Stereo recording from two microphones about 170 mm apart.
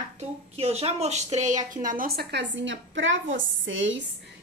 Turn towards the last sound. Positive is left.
turn(degrees=-90)